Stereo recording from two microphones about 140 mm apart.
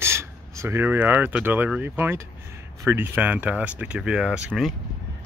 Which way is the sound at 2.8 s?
15° right (ahead or behind).